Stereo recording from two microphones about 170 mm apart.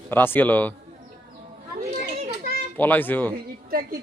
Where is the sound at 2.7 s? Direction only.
10° left (ahead or behind).